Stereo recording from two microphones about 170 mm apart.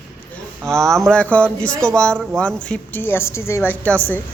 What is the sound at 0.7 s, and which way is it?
A man's voice, 5° left (ahead or behind).